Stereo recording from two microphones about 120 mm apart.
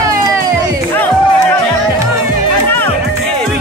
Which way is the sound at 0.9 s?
15° left (ahead or behind).